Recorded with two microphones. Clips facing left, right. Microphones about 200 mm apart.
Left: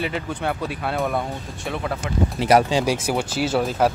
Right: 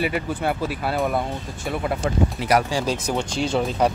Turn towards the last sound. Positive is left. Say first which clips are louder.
# left 1 dB
turn(degrees=0)  # may be behind; listen again after turning